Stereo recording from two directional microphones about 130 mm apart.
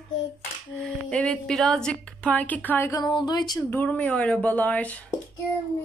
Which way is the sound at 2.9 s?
35° left (ahead or behind).